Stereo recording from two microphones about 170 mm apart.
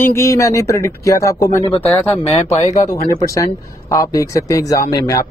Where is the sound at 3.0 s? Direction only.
50° left (ahead or behind).